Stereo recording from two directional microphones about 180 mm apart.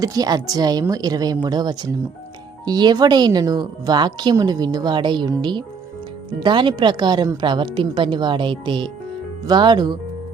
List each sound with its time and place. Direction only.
0.0 s speech: 20° right (ahead or behind)